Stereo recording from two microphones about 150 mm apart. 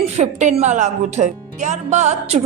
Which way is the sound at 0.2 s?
55° right (ahead or behind).